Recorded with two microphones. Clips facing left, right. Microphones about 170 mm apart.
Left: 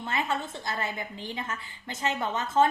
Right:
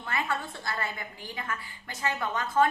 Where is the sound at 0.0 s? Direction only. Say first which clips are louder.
Left 2 dB; 20° left (ahead or behind).